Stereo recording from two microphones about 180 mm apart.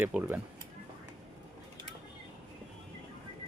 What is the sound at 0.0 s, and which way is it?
Speech, 10° right (ahead or behind).